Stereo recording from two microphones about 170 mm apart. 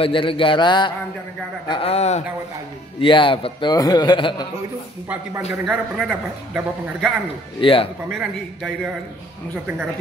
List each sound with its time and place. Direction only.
0.0 s a man's voice: 30° left (ahead or behind)
5.5 s a man's voice: centre (ahead or behind)
7.6 s speech: 30° left (ahead or behind)
8.1 s a man's voice: centre (ahead or behind)